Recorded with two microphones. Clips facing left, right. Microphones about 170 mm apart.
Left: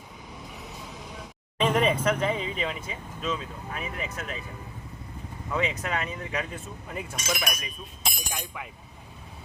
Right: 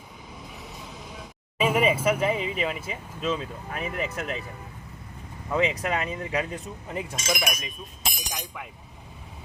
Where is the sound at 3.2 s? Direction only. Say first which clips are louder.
Right 3 dB; 35° right (ahead or behind).